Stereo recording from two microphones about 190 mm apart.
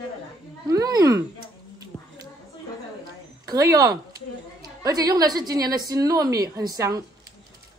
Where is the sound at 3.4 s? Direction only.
20° right (ahead or behind).